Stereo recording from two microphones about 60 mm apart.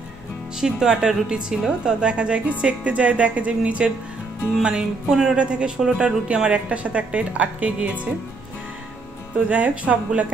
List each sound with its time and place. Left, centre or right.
0.6 s a woman's voice: centre
9.5 s a woman's voice: right